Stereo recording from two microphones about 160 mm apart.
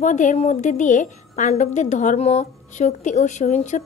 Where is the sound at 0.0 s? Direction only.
50° left (ahead or behind).